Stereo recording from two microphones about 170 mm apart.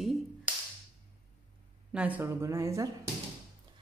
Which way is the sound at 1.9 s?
10° right (ahead or behind).